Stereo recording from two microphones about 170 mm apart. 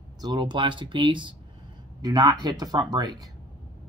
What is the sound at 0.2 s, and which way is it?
Speech, 25° right (ahead or behind).